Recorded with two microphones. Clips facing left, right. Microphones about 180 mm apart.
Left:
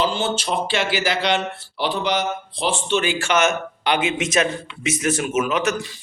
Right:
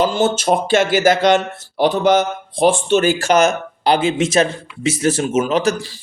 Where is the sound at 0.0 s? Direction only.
45° right (ahead or behind).